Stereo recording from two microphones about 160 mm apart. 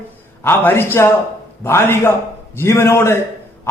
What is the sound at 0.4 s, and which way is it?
A man's voice, 15° left (ahead or behind).